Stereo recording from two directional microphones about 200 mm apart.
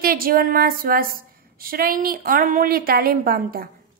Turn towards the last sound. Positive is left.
turn(degrees=-45)  # may be behind; listen again after turning